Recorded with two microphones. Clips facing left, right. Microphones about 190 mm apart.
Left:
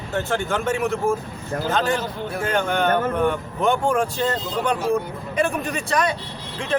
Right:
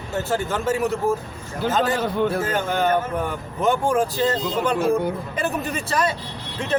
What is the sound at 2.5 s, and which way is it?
Speech, 5° right (ahead or behind).